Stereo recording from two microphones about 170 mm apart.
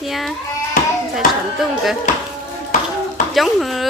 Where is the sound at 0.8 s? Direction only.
55° left (ahead or behind).